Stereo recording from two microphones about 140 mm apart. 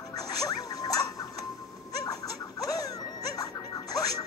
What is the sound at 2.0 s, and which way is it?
Music, 25° left (ahead or behind).